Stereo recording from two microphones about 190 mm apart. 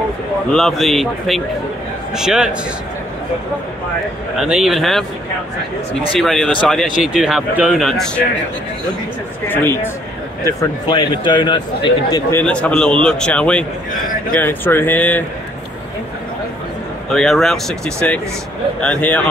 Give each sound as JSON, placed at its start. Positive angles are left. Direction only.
{"t": 0.6, "sound": "speech", "side_deg": 0}
{"t": 4.4, "sound": "speech", "side_deg": 0}
{"t": 6.1, "sound": "speech", "side_deg": 0}
{"t": 9.5, "sound": "a man's voice", "side_deg": 10}
{"t": 12.3, "sound": "speech", "side_deg": 10}
{"t": 17.1, "sound": "speech", "side_deg": 0}